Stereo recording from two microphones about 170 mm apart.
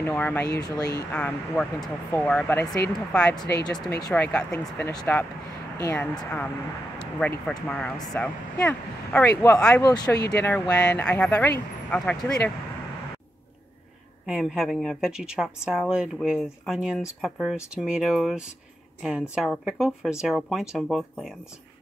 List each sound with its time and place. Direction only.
0.0 s speech: 10° left (ahead or behind)
0.6 s speech: 20° left (ahead or behind)
1.1 s speech: 10° left (ahead or behind)
14.2 s a woman's voice: 5° right (ahead or behind)